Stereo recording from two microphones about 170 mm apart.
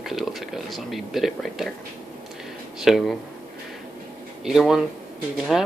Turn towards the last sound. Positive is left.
turn(degrees=0)  # may be behind; listen again after turning